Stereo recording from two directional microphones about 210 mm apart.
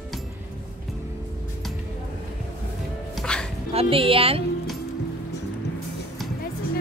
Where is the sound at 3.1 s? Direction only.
5° left (ahead or behind).